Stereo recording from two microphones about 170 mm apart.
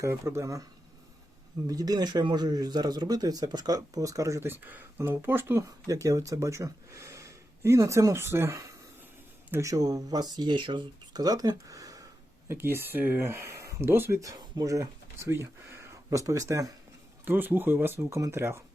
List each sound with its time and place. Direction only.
0.0 s speech: 15° right (ahead or behind)
1.6 s speech: 20° right (ahead or behind)